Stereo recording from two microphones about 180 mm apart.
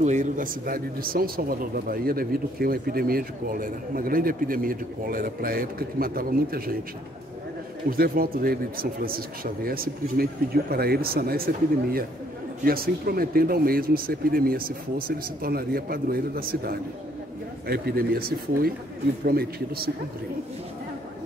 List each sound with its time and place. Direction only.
0.0 s speech: 40° right (ahead or behind)
7.9 s speech: 55° right (ahead or behind)